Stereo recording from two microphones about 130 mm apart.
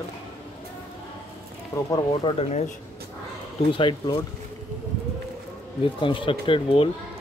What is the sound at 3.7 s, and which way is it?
Speech, 40° left (ahead or behind).